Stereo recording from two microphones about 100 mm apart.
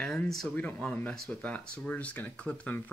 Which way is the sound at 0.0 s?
10° left (ahead or behind).